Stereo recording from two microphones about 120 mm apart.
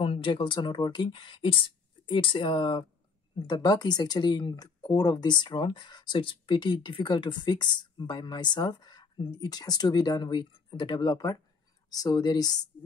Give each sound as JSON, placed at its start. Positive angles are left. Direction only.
{"t": 0.0, "sound": "speech", "side_deg": 45}